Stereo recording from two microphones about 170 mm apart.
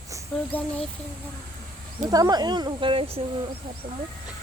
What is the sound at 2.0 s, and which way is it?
Speech, 20° right (ahead or behind).